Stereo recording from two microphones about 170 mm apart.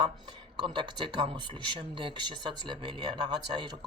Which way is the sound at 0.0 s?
25° right (ahead or behind).